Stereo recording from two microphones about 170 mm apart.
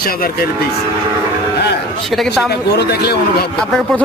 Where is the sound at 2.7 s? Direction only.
75° left (ahead or behind).